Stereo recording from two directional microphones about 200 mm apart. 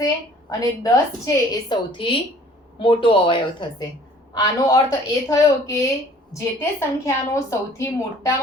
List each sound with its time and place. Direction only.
0.6 s a woman's voice: 15° left (ahead or behind)